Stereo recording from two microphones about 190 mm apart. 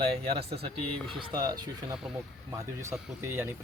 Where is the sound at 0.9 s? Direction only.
Centre (ahead or behind).